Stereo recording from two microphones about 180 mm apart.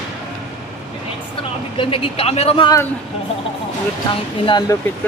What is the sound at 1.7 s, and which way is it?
Speech, 30° left (ahead or behind).